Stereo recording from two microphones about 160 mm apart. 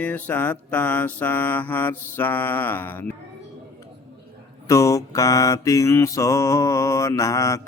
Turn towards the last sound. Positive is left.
turn(degrees=20)  # may be behind; listen again after turning